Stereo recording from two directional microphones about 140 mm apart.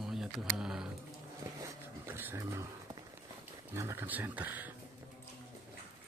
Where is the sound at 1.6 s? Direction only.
15° right (ahead or behind).